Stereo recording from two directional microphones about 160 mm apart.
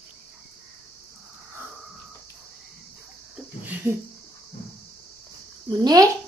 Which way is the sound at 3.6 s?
10° right (ahead or behind).